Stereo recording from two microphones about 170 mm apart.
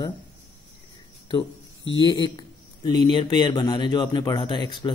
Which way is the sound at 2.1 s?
25° left (ahead or behind).